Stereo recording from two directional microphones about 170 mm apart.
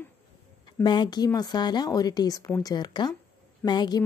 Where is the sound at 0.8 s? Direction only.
25° left (ahead or behind).